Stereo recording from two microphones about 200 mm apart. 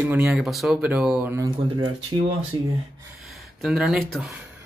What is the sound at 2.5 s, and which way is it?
Speech, 25° right (ahead or behind).